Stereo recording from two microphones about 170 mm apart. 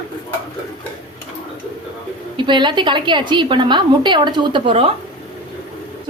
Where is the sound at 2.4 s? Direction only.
25° right (ahead or behind).